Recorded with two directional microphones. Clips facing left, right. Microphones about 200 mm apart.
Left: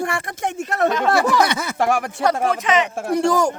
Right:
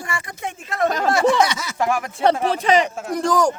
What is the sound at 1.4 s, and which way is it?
Speech, 55° left (ahead or behind).